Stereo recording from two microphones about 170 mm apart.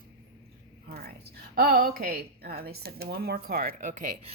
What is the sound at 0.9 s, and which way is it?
A woman's voice, 65° right (ahead or behind).